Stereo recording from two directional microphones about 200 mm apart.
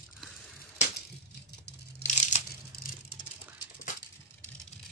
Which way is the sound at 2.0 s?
35° left (ahead or behind).